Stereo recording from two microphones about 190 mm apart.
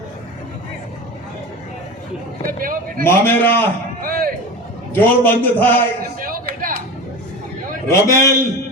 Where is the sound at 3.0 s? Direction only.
10° left (ahead or behind).